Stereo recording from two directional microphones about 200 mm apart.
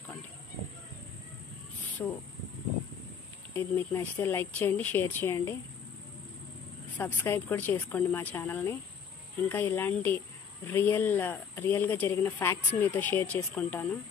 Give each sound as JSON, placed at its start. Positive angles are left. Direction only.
{"t": 2.0, "sound": "speech", "side_deg": 15}
{"t": 3.5, "sound": "speech", "side_deg": 10}
{"t": 7.0, "sound": "speech", "side_deg": 10}